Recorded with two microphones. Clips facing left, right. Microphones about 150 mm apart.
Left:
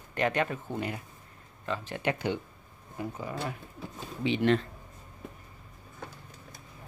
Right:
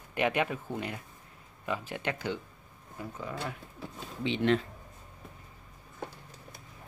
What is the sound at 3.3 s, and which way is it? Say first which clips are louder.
Speech: left 2 dB; centre (ahead or behind).